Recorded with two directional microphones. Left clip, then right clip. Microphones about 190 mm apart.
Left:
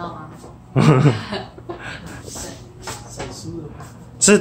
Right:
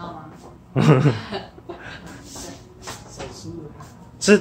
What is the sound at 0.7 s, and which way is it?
Speech, centre (ahead or behind).